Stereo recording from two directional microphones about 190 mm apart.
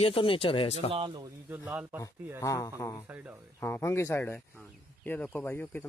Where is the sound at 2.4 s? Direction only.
15° left (ahead or behind).